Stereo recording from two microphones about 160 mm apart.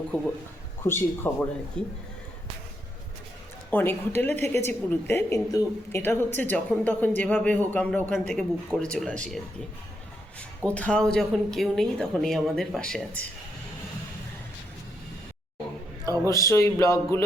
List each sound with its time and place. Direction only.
0.1 s a woman's voice: 10° left (ahead or behind)
3.7 s a woman's voice: 10° left (ahead or behind)
10.7 s speech: 10° left (ahead or behind)
16.2 s a woman's voice: 20° left (ahead or behind)